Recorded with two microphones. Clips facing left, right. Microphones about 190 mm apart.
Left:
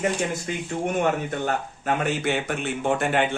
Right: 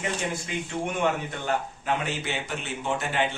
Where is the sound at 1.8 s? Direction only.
50° left (ahead or behind).